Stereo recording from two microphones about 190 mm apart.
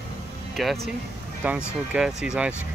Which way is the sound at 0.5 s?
Centre (ahead or behind).